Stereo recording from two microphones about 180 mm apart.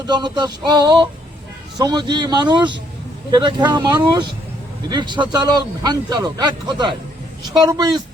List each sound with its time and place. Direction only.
0.0 s speech: 25° right (ahead or behind)